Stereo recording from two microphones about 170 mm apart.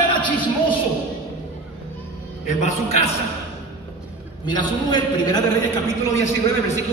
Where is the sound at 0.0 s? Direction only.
30° left (ahead or behind).